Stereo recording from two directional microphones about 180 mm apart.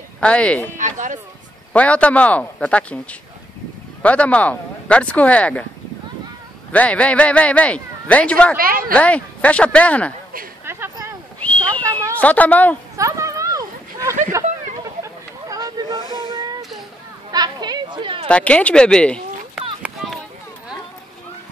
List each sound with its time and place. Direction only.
0.2 s speech: 5° left (ahead or behind)
0.7 s speech: 45° right (ahead or behind)
1.7 s speech: 5° left (ahead or behind)
6.7 s speech: 5° left (ahead or behind)
8.5 s speech: 55° right (ahead or behind)
8.9 s speech: 5° left (ahead or behind)
10.6 s a sound: 15° right (ahead or behind)
11.3 s a sound: 10° left (ahead or behind)
11.9 s a woman's voice: 10° left (ahead or behind)
12.9 s a sound: 15° right (ahead or behind)
14.3 s speech: 15° right (ahead or behind)
15.4 s a sound: 20° right (ahead or behind)
18.3 s speech: 5° left (ahead or behind)